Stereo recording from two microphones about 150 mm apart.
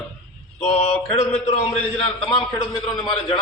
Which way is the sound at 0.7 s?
45° left (ahead or behind).